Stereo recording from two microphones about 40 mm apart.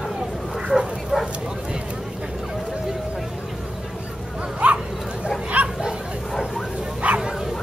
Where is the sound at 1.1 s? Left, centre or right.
Centre.